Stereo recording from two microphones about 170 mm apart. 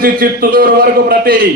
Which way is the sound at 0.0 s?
60° right (ahead or behind).